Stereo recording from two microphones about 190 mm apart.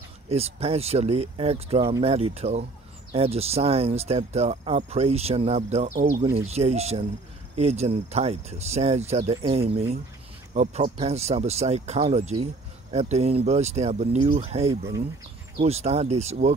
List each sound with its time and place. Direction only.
0.3 s speech: 35° right (ahead or behind)